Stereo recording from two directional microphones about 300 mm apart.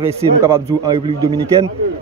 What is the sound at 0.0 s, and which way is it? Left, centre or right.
Speech, centre.